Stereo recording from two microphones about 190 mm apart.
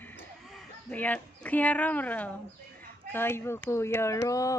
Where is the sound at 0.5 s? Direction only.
5° left (ahead or behind).